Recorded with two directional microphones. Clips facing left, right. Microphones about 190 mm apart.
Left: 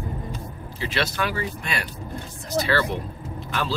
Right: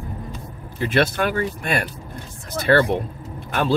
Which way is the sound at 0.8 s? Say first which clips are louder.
Right 6 dB; 55° right (ahead or behind).